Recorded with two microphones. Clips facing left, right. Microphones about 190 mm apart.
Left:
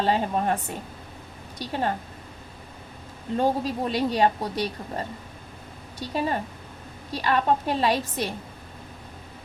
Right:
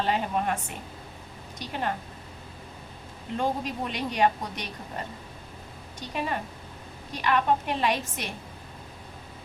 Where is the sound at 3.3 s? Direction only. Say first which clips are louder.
Left 5 dB; 35° left (ahead or behind).